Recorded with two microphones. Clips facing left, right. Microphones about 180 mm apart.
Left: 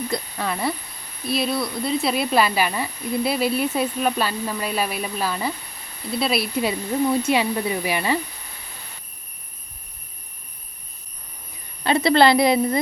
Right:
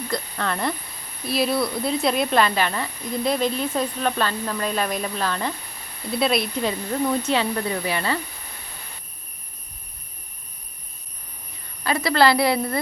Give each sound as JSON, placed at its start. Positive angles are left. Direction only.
{"t": 0.1, "sound": "speech", "side_deg": 10}
{"t": 11.8, "sound": "a woman's voice", "side_deg": 25}